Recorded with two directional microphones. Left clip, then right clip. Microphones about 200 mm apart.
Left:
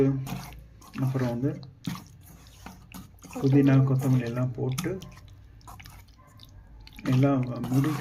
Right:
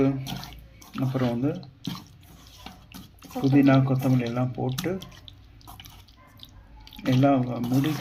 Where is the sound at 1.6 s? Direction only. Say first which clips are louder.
Right 2 dB; 20° left (ahead or behind).